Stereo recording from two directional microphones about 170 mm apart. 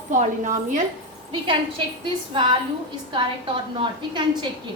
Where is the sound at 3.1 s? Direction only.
30° right (ahead or behind).